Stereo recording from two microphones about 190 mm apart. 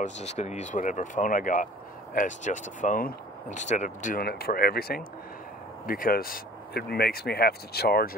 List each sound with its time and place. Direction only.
0.0 s speech: 35° left (ahead or behind); by 8.1 s 55° left (ahead or behind)